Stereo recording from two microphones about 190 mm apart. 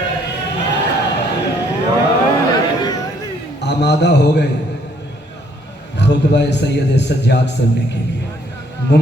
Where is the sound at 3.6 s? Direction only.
65° left (ahead or behind).